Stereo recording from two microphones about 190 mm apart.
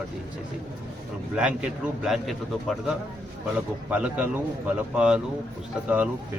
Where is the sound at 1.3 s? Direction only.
5° right (ahead or behind).